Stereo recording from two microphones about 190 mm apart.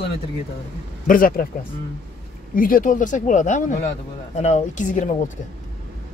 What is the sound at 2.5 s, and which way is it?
Speech, 45° left (ahead or behind).